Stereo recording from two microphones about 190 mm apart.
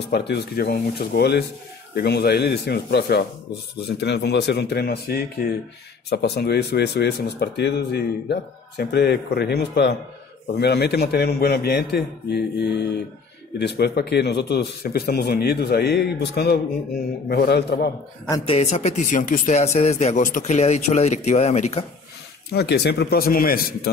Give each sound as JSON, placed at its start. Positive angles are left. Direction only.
{"t": 0.1, "sound": "speech", "side_deg": 60}
{"t": 18.5, "sound": "speech", "side_deg": 35}
{"t": 22.5, "sound": "speech", "side_deg": 60}